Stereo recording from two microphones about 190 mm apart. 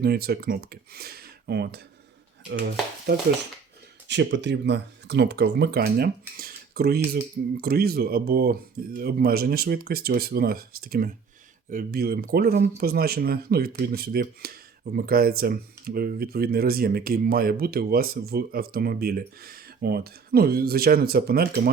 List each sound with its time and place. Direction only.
0.0 s speech: 55° right (ahead or behind)
4.1 s speech: 70° right (ahead or behind); by 21.7 s 50° right (ahead or behind)